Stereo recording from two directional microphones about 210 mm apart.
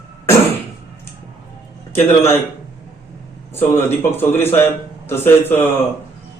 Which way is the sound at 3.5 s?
10° left (ahead or behind).